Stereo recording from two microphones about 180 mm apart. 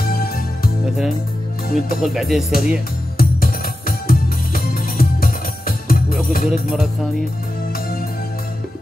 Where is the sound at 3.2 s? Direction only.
55° left (ahead or behind).